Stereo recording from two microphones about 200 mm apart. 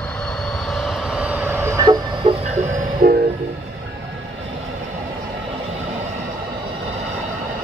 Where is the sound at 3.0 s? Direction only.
50° right (ahead or behind).